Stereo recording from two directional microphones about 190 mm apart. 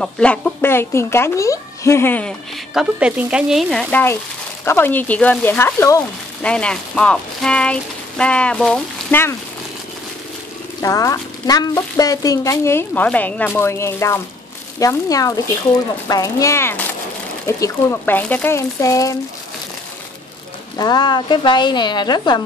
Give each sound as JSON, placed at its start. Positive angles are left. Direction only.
{"t": 0.0, "sound": "speech", "side_deg": 5}
{"t": 2.7, "sound": "speech", "side_deg": -5}
{"t": 4.6, "sound": "speech", "side_deg": 10}
{"t": 10.8, "sound": "speech", "side_deg": 15}
{"t": 20.7, "sound": "speech", "side_deg": 20}